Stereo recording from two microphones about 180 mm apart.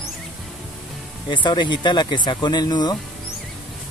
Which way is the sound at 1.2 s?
25° left (ahead or behind).